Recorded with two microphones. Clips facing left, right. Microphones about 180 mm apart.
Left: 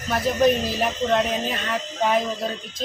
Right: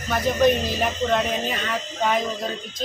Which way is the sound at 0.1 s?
Centre (ahead or behind).